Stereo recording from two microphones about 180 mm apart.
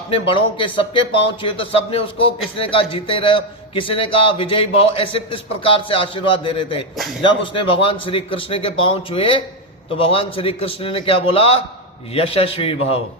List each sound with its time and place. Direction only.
0.1 s a man's voice: 30° left (ahead or behind)